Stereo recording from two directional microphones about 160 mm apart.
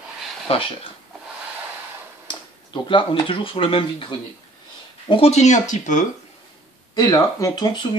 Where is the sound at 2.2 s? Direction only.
30° left (ahead or behind).